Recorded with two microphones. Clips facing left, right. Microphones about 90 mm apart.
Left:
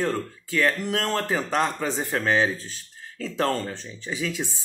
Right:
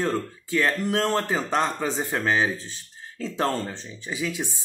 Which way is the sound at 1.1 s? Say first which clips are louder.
Right 1 dB; 20° right (ahead or behind).